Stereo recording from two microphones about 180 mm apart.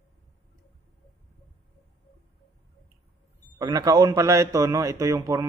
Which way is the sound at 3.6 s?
20° right (ahead or behind).